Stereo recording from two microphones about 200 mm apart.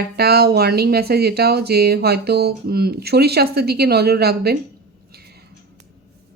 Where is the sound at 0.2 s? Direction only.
50° right (ahead or behind).